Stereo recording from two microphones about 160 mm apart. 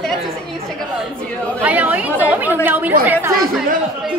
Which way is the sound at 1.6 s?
10° right (ahead or behind).